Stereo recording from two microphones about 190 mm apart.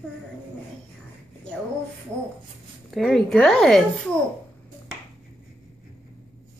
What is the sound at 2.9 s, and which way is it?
Speech, centre (ahead or behind).